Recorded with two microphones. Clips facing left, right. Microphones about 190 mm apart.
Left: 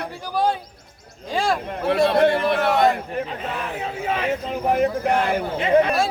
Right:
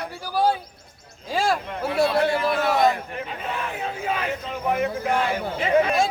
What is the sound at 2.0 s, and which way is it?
Speech, 55° left (ahead or behind).